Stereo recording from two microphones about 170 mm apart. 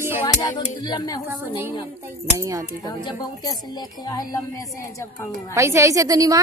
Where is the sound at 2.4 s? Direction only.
20° right (ahead or behind).